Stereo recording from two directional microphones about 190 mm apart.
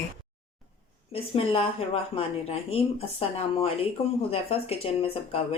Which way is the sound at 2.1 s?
30° left (ahead or behind).